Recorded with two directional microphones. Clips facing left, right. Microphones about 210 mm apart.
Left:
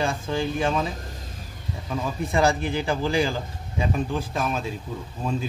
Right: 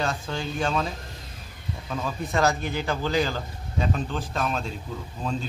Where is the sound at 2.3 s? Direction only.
10° left (ahead or behind).